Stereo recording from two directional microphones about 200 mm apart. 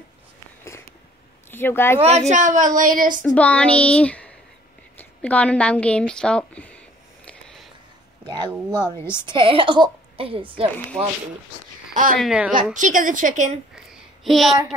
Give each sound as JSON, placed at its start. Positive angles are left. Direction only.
{"t": 1.5, "sound": "speech", "side_deg": 10}
{"t": 2.0, "sound": "speech", "side_deg": -35}
{"t": 3.3, "sound": "a woman's voice", "side_deg": 5}
{"t": 7.2, "sound": "a sound", "side_deg": 5}
{"t": 8.3, "sound": "a woman's voice", "side_deg": -20}
{"t": 11.9, "sound": "speech", "side_deg": -45}
{"t": 12.2, "sound": "speech", "side_deg": -5}
{"t": 12.7, "sound": "speech", "side_deg": -40}
{"t": 13.7, "sound": "a sound", "side_deg": 0}